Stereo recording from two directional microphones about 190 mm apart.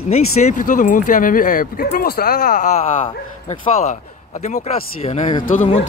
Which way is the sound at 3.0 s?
30° left (ahead or behind).